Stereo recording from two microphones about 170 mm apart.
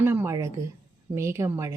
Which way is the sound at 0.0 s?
15° right (ahead or behind).